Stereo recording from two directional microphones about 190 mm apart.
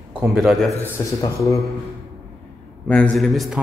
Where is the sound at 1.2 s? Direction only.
15° left (ahead or behind).